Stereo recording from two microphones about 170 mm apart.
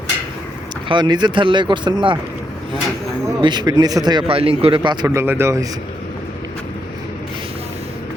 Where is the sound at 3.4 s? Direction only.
25° right (ahead or behind).